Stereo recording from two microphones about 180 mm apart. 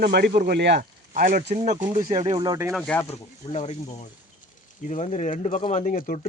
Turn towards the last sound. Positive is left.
turn(degrees=50)  # may be behind; listen again after turning